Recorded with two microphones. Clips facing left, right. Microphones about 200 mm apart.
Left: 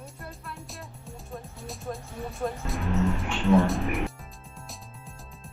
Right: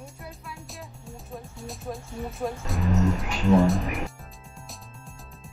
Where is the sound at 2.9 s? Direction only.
40° right (ahead or behind).